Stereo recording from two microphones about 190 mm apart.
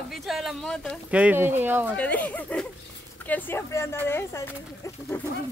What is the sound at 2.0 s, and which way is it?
Speech, 10° left (ahead or behind).